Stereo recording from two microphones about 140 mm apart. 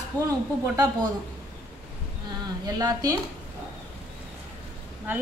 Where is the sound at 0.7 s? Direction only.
25° right (ahead or behind).